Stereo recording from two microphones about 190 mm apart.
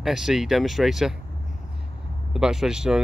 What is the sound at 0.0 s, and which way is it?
Speech, centre (ahead or behind).